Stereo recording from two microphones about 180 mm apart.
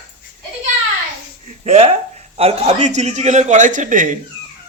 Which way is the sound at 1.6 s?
35° right (ahead or behind).